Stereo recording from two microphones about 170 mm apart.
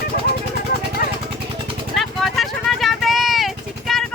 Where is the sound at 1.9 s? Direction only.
Centre (ahead or behind).